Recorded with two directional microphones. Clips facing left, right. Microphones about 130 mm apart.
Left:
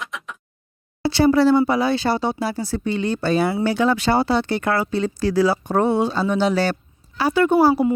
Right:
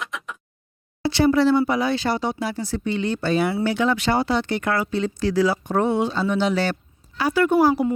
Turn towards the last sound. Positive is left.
turn(degrees=25)  # may be behind; listen again after turning